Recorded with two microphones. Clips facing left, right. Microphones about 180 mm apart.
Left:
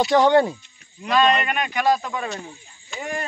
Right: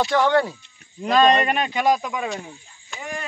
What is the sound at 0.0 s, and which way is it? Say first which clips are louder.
Speech: left 3 dB; 20° left (ahead or behind).